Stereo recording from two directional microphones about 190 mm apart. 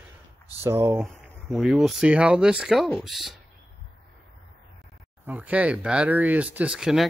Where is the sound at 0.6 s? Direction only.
15° right (ahead or behind).